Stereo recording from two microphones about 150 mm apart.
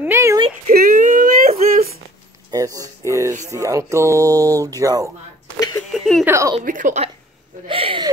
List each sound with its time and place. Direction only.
0.0 s a sound: 15° right (ahead or behind)
0.7 s whimper: 65° right (ahead or behind)
2.5 s a sound: 25° right (ahead or behind)
3.1 s music: 20° right (ahead or behind)
3.5 s speech: 20° right (ahead or behind)
5.9 s giggle: 5° left (ahead or behind)
6.2 s speech: 20° right (ahead or behind)
6.6 s a woman's voice: 60° right (ahead or behind)
7.6 s a sound: 35° right (ahead or behind)